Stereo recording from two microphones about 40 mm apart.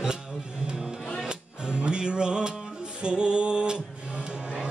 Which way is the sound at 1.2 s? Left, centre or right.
Right.